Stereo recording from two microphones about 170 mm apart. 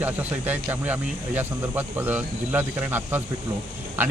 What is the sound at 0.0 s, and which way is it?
Speech, 10° right (ahead or behind).